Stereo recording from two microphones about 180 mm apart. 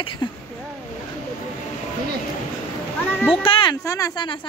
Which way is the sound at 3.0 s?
10° left (ahead or behind).